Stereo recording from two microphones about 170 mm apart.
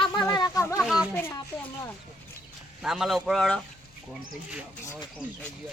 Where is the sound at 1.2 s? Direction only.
15° left (ahead or behind).